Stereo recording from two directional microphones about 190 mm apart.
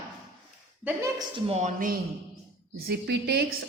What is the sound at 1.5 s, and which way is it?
Speech, 35° right (ahead or behind).